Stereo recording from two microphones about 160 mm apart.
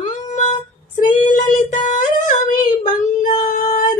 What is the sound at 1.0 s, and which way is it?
Child singing, 50° left (ahead or behind).